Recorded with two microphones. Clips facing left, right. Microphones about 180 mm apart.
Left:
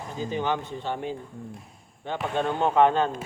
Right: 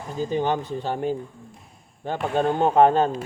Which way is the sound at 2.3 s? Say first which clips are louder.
Right 4 dB; 40° right (ahead or behind).